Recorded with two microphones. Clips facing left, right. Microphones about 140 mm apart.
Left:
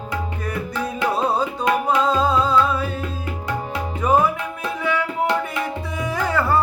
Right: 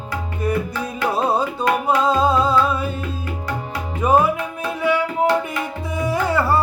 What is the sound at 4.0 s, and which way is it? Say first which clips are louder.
Music: right 2 dB; 10° right (ahead or behind).